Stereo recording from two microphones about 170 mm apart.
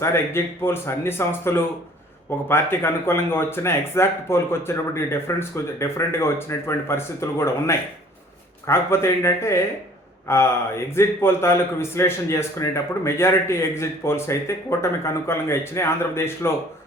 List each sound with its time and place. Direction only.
0.0 s a man's voice: 15° left (ahead or behind)